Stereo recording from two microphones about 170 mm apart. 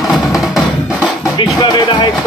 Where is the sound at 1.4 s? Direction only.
25° left (ahead or behind).